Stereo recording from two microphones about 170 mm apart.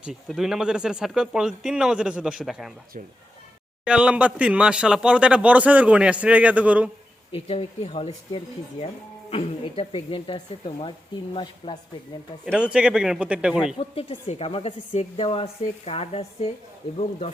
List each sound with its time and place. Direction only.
0.0 s speech: 5° right (ahead or behind)
3.8 s speech: 5° right (ahead or behind)
7.3 s speech: 35° left (ahead or behind)
12.5 s speech: 5° right (ahead or behind)
13.7 s speech: 35° left (ahead or behind)